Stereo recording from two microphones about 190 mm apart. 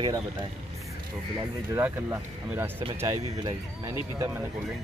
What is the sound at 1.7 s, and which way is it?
Speech, 15° right (ahead or behind).